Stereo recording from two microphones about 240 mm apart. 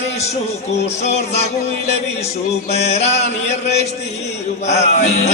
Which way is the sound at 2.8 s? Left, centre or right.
Left.